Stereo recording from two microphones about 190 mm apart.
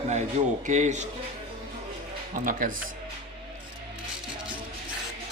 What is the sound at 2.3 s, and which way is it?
Speech, 45° right (ahead or behind).